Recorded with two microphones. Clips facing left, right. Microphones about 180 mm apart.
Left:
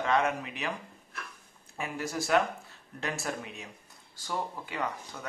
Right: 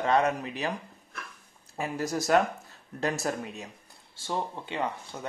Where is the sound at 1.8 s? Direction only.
40° right (ahead or behind).